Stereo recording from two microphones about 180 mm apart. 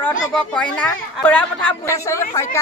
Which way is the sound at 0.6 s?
5° left (ahead or behind).